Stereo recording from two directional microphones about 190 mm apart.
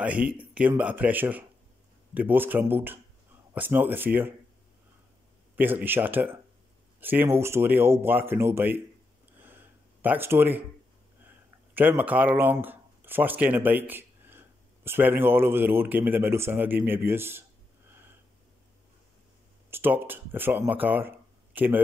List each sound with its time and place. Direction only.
0.0 s speech: 5° right (ahead or behind)
5.6 s speech: 10° right (ahead or behind)
9.4 s a sound: 10° right (ahead or behind)
11.2 s speech: 10° right (ahead or behind)
19.7 s speech: 10° right (ahead or behind)